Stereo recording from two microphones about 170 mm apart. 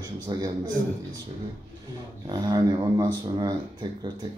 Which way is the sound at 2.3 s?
25° right (ahead or behind).